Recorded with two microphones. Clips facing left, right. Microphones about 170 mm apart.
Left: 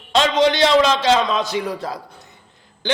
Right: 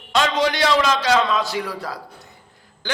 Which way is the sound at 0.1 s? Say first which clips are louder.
Left 4 dB; 20° left (ahead or behind).